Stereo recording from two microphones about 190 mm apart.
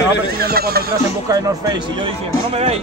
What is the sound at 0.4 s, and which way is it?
Speech, 55° right (ahead or behind).